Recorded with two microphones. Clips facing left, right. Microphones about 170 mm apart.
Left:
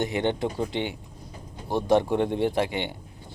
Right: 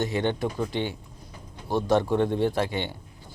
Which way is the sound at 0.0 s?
20° left (ahead or behind).